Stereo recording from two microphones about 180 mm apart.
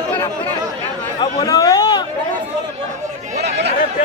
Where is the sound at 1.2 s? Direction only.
25° left (ahead or behind).